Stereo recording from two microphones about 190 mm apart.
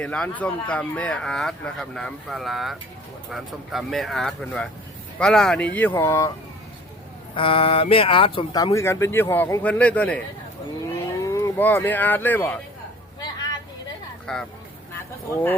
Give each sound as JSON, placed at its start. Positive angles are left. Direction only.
{"t": 0.0, "sound": "speech", "side_deg": 5}
{"t": 6.0, "sound": "speech", "side_deg": 15}
{"t": 7.3, "sound": "speech", "side_deg": 30}
{"t": 10.8, "sound": "speech", "side_deg": 15}
{"t": 14.3, "sound": "speech", "side_deg": 5}